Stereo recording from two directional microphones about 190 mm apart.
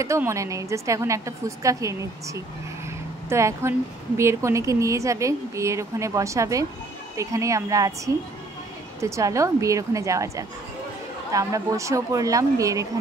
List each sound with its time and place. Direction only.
0.0 s a woman's voice: 15° right (ahead or behind)